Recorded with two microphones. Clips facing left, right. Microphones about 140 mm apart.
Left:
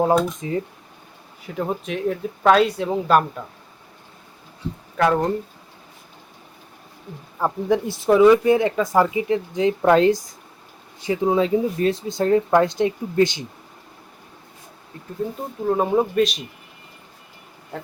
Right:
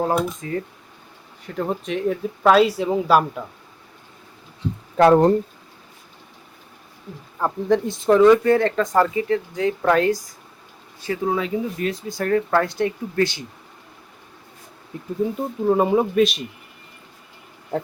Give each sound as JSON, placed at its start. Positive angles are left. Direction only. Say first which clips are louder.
{"t": 0.4, "sound": "speech", "louder": "left 1 dB", "side_deg": 20}
{"t": 1.5, "sound": "speech", "louder": "right 1 dB", "side_deg": 5}
{"t": 4.9, "sound": "speech", "louder": "right 6 dB", "side_deg": -35}
{"t": 7.3, "sound": "speech", "louder": "right 1 dB", "side_deg": 10}
{"t": 15.2, "sound": "speech", "louder": "right 3 dB", "side_deg": -5}